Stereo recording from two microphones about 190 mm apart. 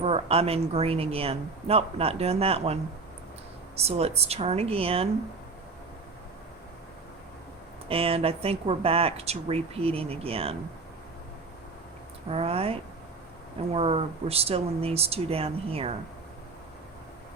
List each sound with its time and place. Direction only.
0.0 s speech: 30° right (ahead or behind)
3.8 s speech: 35° right (ahead or behind)
7.9 s speech: 30° right (ahead or behind)
12.3 s speech: 30° right (ahead or behind)